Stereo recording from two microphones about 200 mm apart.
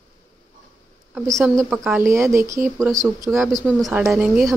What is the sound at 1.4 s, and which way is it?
A woman's voice, centre (ahead or behind).